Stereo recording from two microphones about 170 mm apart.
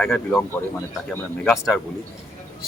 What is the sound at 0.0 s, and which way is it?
Speech, 5° left (ahead or behind).